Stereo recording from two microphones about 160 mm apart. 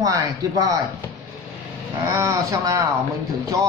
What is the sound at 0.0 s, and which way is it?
Speech, 20° right (ahead or behind).